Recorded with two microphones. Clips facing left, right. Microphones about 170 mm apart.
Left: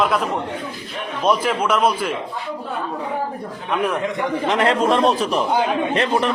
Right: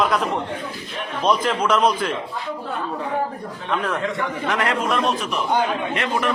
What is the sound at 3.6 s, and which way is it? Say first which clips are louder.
A man's voice: left 2 dB; 15° left (ahead or behind).